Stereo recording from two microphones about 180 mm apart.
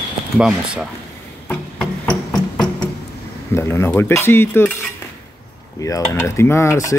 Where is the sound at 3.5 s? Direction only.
15° left (ahead or behind).